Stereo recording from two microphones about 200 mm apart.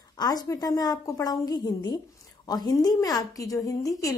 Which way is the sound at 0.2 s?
20° left (ahead or behind).